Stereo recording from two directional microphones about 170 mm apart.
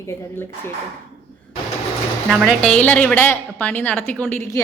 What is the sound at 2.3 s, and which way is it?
A woman's voice, centre (ahead or behind).